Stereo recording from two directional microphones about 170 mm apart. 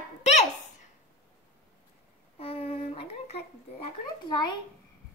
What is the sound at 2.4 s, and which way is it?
A child's voice, 35° left (ahead or behind).